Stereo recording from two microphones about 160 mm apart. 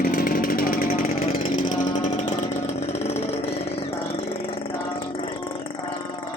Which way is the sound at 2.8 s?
40° left (ahead or behind).